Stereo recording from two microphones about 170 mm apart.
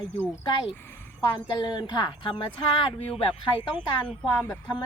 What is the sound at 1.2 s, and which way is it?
A woman's voice, 25° left (ahead or behind).